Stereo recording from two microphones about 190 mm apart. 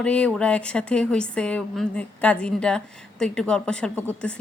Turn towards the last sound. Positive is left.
turn(degrees=5)  # may be behind; listen again after turning